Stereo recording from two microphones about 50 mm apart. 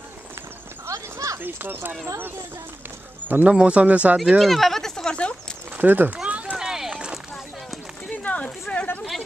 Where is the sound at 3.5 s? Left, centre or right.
Right.